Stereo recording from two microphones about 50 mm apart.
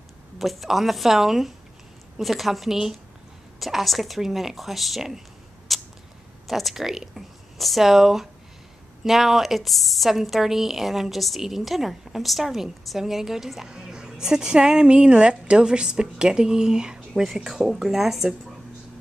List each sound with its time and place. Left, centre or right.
0.4 s a woman's voice: centre
5.7 s a sound: centre
6.4 s a woman's voice: centre